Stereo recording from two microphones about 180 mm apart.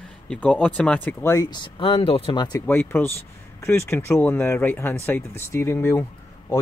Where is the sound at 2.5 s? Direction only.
10° left (ahead or behind).